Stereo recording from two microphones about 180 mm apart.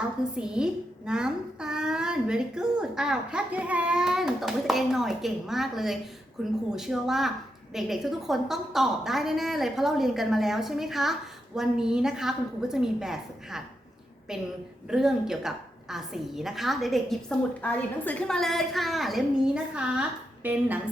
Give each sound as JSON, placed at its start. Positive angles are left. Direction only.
{"t": 0.3, "sound": "a woman's voice", "side_deg": -5}